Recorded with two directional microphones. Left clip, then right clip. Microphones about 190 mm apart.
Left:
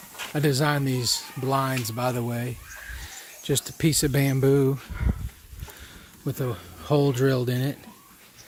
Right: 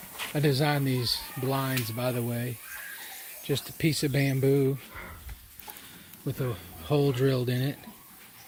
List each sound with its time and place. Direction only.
0.2 s speech: 10° left (ahead or behind)
6.2 s speech: 15° left (ahead or behind)